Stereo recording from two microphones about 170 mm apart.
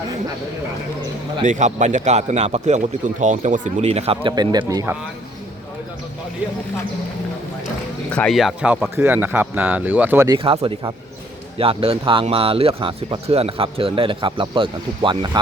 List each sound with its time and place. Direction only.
1.5 s speech: 45° right (ahead or behind); by 4.9 s 20° right (ahead or behind)
8.1 s speech: 5° left (ahead or behind)
10.2 s speech: 30° right (ahead or behind)